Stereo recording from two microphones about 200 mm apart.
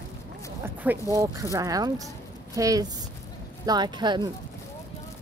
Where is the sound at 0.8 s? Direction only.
15° right (ahead or behind).